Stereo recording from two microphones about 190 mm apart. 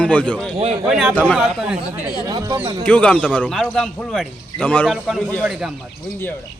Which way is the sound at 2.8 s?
5° left (ahead or behind).